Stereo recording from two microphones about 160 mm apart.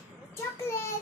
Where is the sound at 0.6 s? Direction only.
15° left (ahead or behind).